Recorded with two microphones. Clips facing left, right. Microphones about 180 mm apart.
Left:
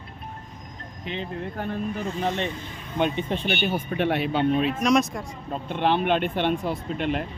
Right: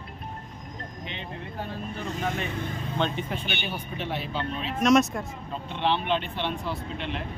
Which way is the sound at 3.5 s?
50° left (ahead or behind).